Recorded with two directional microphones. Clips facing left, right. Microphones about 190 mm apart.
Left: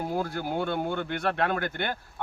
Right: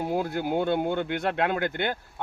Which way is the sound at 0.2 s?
15° right (ahead or behind).